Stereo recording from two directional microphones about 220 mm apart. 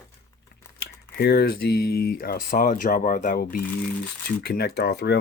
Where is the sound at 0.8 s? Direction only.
45° left (ahead or behind).